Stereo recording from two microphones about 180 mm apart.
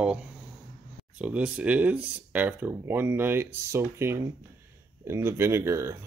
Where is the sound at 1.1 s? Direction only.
5° right (ahead or behind).